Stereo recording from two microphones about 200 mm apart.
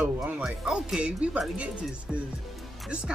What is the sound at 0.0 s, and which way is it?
Speech, centre (ahead or behind).